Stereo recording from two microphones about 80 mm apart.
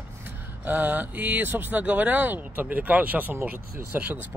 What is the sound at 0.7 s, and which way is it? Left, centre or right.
Speech, right.